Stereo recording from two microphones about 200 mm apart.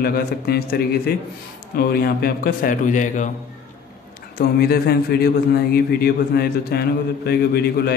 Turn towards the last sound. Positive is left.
turn(degrees=50)  # may be behind; listen again after turning